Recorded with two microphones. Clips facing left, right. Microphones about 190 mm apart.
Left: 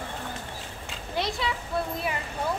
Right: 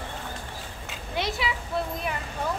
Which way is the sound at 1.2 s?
Centre (ahead or behind).